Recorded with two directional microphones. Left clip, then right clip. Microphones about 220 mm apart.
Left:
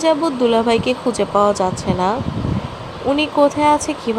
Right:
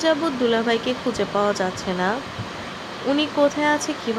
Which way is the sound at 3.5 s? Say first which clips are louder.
Left 6 dB; 15° left (ahead or behind).